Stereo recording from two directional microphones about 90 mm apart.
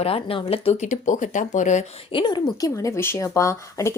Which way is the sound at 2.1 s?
60° left (ahead or behind).